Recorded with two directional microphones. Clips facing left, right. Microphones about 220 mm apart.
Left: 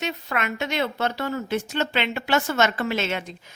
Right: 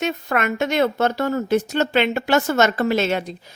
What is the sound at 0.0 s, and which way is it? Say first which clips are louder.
A woman's voice: right 6 dB; 50° right (ahead or behind).